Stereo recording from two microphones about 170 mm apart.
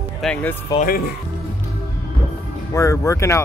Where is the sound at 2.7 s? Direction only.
20° left (ahead or behind).